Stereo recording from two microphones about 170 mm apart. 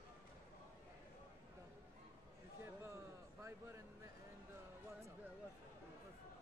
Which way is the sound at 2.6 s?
15° right (ahead or behind).